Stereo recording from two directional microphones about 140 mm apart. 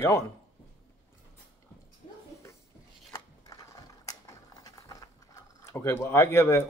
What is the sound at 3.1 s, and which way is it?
Mechanisms, 25° left (ahead or behind).